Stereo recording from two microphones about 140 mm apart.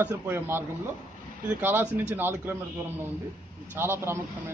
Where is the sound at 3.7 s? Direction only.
15° right (ahead or behind).